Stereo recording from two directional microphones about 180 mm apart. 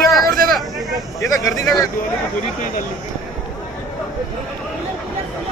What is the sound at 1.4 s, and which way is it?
Speech, 20° left (ahead or behind).